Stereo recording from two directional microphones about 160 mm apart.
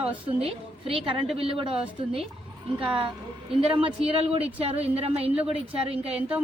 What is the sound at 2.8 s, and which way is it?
Speech, 35° right (ahead or behind).